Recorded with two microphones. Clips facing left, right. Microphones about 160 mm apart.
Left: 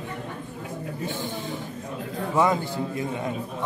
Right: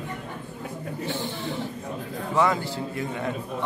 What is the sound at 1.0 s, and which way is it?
Speech, 50° left (ahead or behind).